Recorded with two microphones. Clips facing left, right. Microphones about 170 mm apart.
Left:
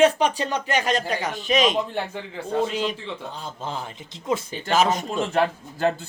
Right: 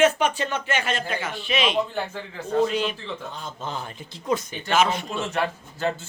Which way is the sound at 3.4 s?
30° left (ahead or behind).